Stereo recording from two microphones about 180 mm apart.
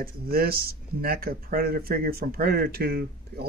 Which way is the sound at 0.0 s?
55° right (ahead or behind).